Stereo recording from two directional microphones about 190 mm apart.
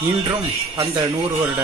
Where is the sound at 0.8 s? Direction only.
15° right (ahead or behind).